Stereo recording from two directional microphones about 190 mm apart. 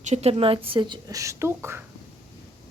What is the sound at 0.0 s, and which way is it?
Speech, 35° right (ahead or behind).